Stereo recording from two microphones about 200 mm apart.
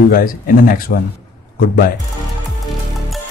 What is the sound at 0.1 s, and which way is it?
Speech, 45° left (ahead or behind).